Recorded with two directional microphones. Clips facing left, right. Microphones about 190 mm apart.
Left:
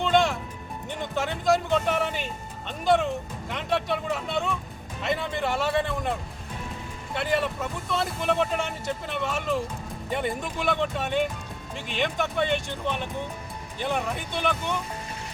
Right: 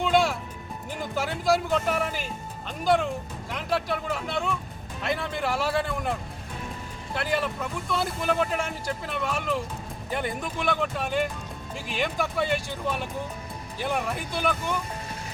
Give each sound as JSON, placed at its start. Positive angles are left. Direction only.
{"t": 0.0, "sound": "music", "side_deg": -5}
{"t": 0.9, "sound": "speech", "side_deg": -5}